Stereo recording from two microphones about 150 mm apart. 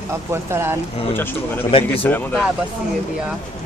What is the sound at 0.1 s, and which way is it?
Speech, 15° right (ahead or behind).